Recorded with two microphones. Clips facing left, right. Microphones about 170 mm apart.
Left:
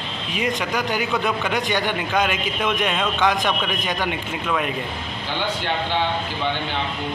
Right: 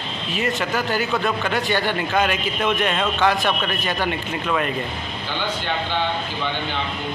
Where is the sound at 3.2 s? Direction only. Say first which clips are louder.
Right 1 dB; 5° right (ahead or behind).